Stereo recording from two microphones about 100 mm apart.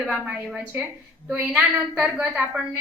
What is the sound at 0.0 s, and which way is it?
A woman's voice, 10° right (ahead or behind).